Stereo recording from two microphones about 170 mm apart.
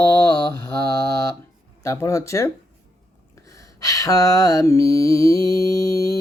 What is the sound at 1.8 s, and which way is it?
Speech, 20° left (ahead or behind).